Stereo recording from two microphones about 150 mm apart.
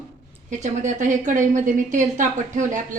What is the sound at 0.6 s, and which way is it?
Speech, 55° right (ahead or behind).